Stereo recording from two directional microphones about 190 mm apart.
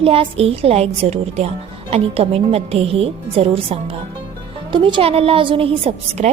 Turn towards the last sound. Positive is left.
turn(degrees=-35)  # may be behind; listen again after turning